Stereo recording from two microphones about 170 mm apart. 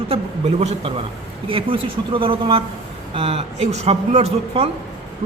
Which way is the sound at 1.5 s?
30° right (ahead or behind).